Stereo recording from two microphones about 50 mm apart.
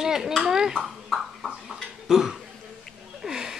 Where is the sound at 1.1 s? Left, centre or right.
Centre.